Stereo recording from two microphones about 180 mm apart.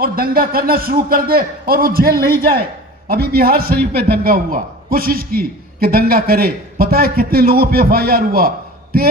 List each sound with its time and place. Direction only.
0.0 s a man's voice: 55° right (ahead or behind)